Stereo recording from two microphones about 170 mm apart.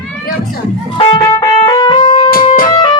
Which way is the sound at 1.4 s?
20° left (ahead or behind).